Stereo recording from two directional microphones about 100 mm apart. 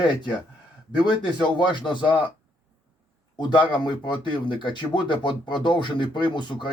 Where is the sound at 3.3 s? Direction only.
55° left (ahead or behind).